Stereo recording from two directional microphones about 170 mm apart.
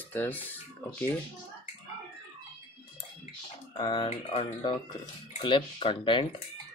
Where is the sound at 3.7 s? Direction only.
25° left (ahead or behind).